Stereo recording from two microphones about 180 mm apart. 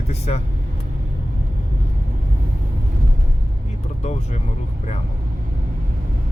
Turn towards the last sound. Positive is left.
turn(degrees=40)  # may be behind; listen again after turning